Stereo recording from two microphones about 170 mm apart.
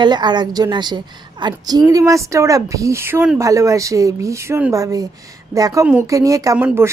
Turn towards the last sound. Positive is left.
turn(degrees=-15)  # may be behind; listen again after turning